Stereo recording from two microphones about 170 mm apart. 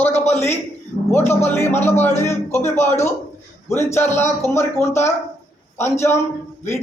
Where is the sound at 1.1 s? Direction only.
15° left (ahead or behind).